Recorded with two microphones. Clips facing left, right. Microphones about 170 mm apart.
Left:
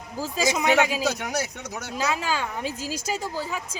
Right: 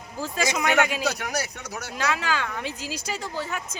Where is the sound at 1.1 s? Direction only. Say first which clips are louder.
Left 1 dB; 20° left (ahead or behind).